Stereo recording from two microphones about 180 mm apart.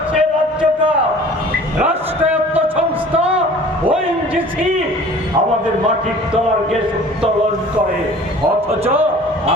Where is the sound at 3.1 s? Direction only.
35° right (ahead or behind).